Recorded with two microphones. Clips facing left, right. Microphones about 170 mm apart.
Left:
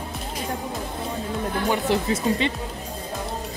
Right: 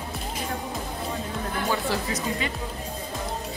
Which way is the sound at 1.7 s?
20° left (ahead or behind).